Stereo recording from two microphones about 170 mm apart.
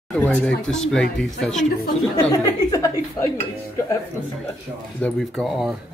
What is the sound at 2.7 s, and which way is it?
Speech, 20° left (ahead or behind).